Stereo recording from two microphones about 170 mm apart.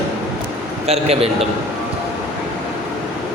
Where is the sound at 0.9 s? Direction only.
35° right (ahead or behind).